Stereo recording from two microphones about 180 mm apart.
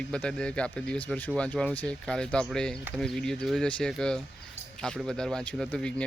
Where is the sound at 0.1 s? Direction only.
5° left (ahead or behind).